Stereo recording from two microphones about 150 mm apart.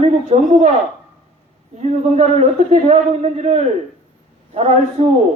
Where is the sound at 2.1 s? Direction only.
50° right (ahead or behind).